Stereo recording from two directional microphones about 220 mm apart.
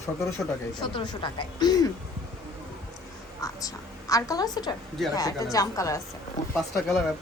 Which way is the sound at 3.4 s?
15° left (ahead or behind).